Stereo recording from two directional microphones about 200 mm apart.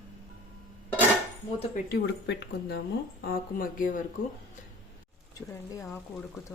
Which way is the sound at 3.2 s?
45° left (ahead or behind).